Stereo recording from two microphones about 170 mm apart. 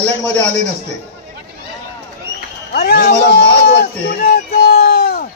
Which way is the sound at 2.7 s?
65° left (ahead or behind).